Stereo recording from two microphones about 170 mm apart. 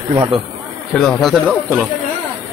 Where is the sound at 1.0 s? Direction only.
Centre (ahead or behind).